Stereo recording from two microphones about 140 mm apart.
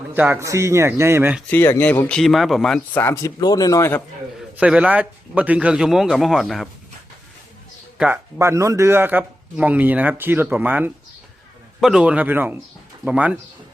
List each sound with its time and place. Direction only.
0.1 s a man's voice: 15° right (ahead or behind)
1.5 s speech: 15° left (ahead or behind)
2.9 s a man's voice: 15° left (ahead or behind)
4.5 s a man's voice: 10° right (ahead or behind)
7.9 s speech: 5° right (ahead or behind)
8.4 s a man's voice: 20° right (ahead or behind)